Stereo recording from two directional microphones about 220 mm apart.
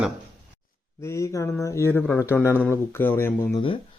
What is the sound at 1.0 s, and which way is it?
Speech, 15° left (ahead or behind).